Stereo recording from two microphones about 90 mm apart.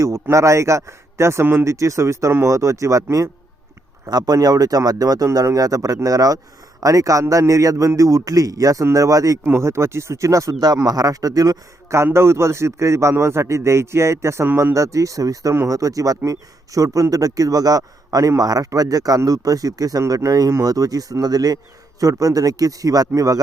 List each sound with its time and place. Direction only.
0.0 s a man's voice: 35° right (ahead or behind)
9.4 s a man's voice: 25° right (ahead or behind)